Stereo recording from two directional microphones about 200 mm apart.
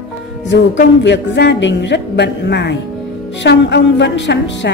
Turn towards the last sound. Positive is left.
turn(degrees=65)  # may be behind; listen again after turning